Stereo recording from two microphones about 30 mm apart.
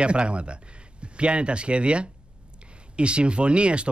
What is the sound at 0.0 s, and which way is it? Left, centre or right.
Speech, right.